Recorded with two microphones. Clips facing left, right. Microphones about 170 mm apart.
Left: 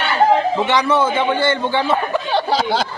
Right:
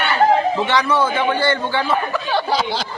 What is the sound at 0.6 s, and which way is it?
A man's voice, 20° left (ahead or behind).